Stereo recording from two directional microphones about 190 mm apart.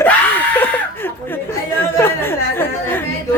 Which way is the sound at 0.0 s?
10° left (ahead or behind).